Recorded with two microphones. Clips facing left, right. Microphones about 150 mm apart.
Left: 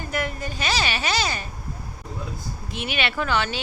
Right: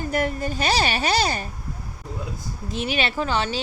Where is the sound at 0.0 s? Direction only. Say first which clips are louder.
Right 4 dB; 45° right (ahead or behind).